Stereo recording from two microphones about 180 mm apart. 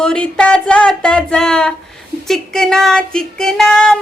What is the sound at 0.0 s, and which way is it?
Music, 5° left (ahead or behind).